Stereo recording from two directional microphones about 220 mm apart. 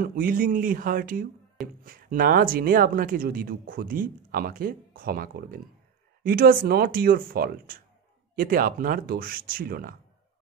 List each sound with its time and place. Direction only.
0.0 s speech: 40° right (ahead or behind)